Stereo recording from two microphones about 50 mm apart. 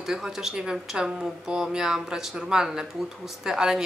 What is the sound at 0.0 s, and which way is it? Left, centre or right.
Speech, centre.